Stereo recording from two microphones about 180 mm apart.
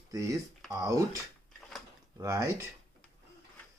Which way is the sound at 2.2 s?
20° right (ahead or behind).